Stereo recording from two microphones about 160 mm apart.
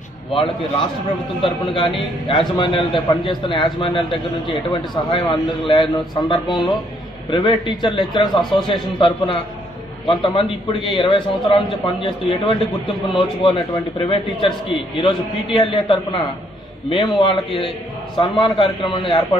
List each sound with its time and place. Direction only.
1.4 s a man's voice: 30° left (ahead or behind)